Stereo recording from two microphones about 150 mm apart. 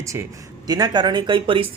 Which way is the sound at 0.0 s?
20° right (ahead or behind).